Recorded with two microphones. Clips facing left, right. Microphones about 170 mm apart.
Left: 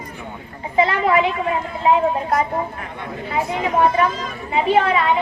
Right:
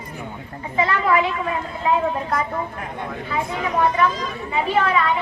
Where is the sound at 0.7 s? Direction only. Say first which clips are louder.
Left 3 dB; 25° left (ahead or behind).